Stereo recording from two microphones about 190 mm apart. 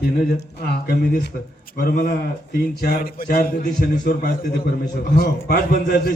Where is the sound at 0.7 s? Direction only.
60° left (ahead or behind).